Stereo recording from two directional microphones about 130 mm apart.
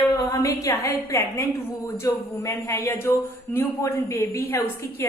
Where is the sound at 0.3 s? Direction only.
25° left (ahead or behind).